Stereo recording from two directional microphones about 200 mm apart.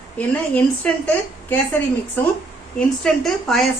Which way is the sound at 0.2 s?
10° left (ahead or behind).